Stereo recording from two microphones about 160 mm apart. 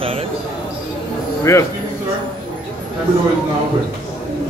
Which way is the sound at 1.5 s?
20° left (ahead or behind).